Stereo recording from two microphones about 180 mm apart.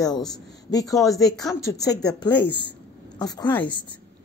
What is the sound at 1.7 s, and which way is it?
Speech, 65° left (ahead or behind).